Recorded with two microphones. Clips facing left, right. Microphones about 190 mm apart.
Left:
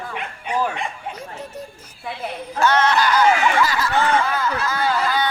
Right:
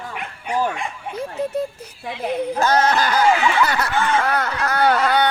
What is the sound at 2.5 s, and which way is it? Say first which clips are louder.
Speech: left 2 dB; 40° right (ahead or behind).